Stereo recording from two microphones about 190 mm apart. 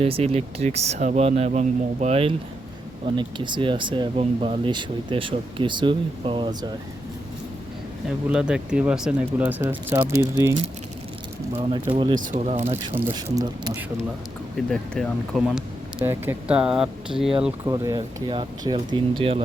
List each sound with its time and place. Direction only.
0.0 s speech: 30° right (ahead or behind)
8.3 s speech: 5° right (ahead or behind)
11.5 s speech: 30° right (ahead or behind)
12.2 s speech: 40° right (ahead or behind)
12.7 s speech: 10° right (ahead or behind)
14.7 s speech: centre (ahead or behind)
17.7 s speech: 20° right (ahead or behind)